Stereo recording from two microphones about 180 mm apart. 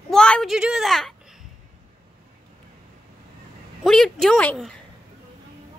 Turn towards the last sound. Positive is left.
turn(degrees=5)  # may be behind; listen again after turning